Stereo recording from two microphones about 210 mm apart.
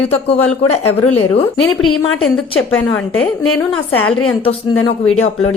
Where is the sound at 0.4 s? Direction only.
30° left (ahead or behind).